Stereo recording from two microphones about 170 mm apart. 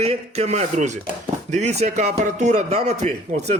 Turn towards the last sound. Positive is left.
turn(degrees=-40)  # may be behind; listen again after turning